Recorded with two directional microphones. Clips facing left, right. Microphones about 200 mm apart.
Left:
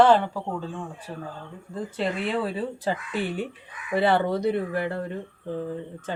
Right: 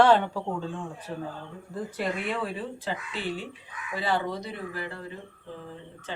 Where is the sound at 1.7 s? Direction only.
25° left (ahead or behind).